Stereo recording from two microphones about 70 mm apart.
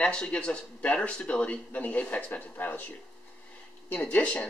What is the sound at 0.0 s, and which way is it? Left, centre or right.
Speech, centre.